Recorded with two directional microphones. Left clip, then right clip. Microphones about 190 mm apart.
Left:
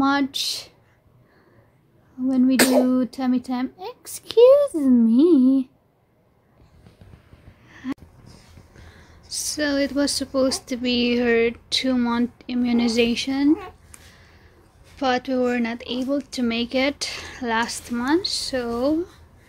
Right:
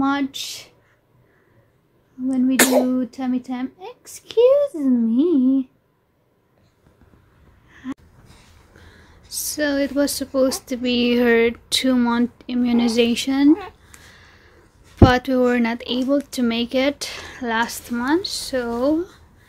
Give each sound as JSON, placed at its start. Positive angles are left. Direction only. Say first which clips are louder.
{"t": 0.0, "sound": "speech", "louder": "left 1 dB", "side_deg": 40}
{"t": 2.2, "sound": "a sound", "louder": "left 1 dB", "side_deg": 45}
{"t": 2.5, "sound": "a sound", "louder": "right 2 dB", "side_deg": -5}
{"t": 2.9, "sound": "speech", "louder": "left 1 dB", "side_deg": 45}
{"t": 7.7, "sound": "gasp", "louder": "left 1 dB", "side_deg": 30}
{"t": 8.7, "sound": "speech", "louder": "right 2 dB", "side_deg": -5}